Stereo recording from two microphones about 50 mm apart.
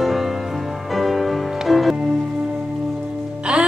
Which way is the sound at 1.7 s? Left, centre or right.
Centre.